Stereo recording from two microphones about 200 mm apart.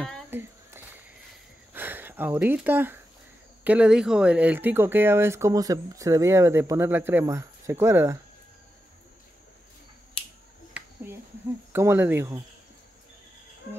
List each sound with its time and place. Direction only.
0.3 s a sound: 10° right (ahead or behind)
1.7 s speech: 10° right (ahead or behind)
11.7 s speech: 10° right (ahead or behind)